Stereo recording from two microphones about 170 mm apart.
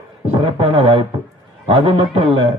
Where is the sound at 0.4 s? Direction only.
30° right (ahead or behind).